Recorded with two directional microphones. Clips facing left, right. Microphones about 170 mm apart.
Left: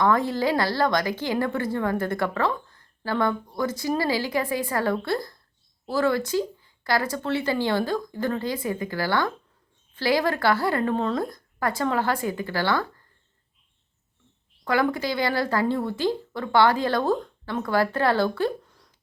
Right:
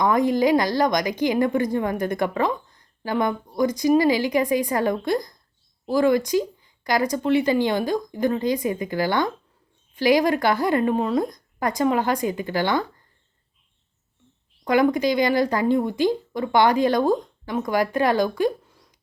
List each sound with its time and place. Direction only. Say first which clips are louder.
0.0 s a woman's voice: right 3 dB; 15° right (ahead or behind)
14.6 s a woman's voice: right 5 dB; 20° right (ahead or behind)